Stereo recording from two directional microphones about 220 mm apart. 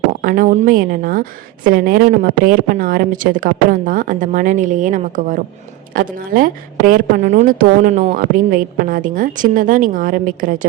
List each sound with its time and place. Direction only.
0.2 s a woman's voice: 40° right (ahead or behind)